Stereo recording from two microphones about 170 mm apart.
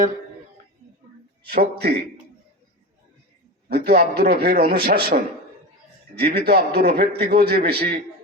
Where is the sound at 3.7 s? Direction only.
65° right (ahead or behind).